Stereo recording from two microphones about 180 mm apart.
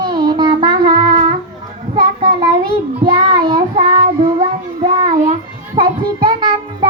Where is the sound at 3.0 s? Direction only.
30° right (ahead or behind).